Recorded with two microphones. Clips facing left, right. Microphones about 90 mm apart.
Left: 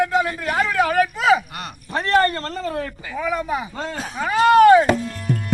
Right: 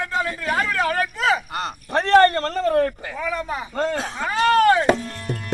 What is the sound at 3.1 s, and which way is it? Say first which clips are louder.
Speech: left 6 dB; 15° left (ahead or behind).